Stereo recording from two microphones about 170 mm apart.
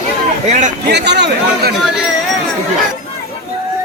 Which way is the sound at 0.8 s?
85° right.